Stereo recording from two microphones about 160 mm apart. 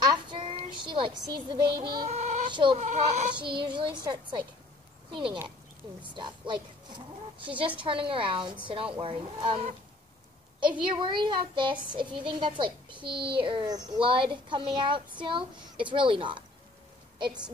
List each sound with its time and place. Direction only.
0.1 s child singing: 30° right (ahead or behind)
2.0 s speech: 45° right (ahead or behind)
2.5 s a woman's voice: 30° right (ahead or behind)
2.8 s speech: 45° right (ahead or behind)
3.4 s a woman's voice: 30° right (ahead or behind)
10.8 s a woman's voice: 30° right (ahead or behind)